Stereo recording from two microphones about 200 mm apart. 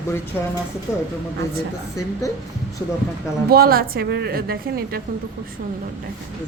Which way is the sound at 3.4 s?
50° right (ahead or behind).